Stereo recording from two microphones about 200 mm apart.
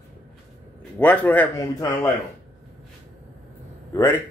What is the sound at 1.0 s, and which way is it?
A man's voice, 10° left (ahead or behind).